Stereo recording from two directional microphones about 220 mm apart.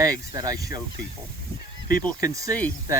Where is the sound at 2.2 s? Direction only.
15° right (ahead or behind).